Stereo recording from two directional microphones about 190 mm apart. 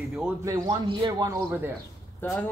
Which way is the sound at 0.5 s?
25° right (ahead or behind).